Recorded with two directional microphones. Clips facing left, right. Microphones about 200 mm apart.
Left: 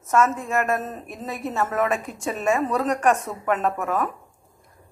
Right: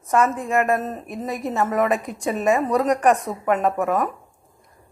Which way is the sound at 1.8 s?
Centre (ahead or behind).